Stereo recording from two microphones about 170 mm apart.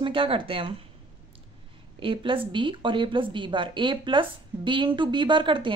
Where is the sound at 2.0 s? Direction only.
30° right (ahead or behind).